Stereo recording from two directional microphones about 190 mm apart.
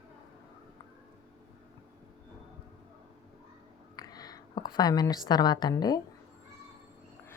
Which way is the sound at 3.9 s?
20° left (ahead or behind).